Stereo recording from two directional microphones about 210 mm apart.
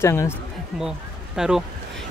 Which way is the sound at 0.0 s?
10° left (ahead or behind).